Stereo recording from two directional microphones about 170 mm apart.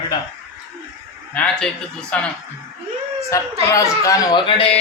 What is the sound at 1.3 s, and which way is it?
A man's voice, 5° left (ahead or behind).